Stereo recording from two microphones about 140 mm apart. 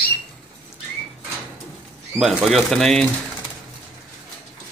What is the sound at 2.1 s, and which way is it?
Speech, centre (ahead or behind).